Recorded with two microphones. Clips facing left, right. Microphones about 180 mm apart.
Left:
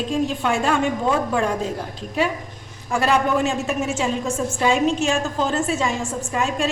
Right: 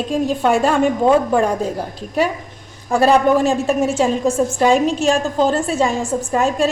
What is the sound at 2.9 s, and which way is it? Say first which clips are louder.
A woman's voice: right 6 dB; 35° right (ahead or behind).